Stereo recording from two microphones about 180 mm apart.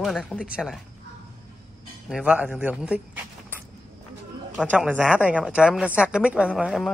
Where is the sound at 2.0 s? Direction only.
5° right (ahead or behind).